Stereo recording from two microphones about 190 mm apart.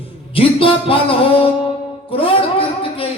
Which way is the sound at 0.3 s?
30° left (ahead or behind).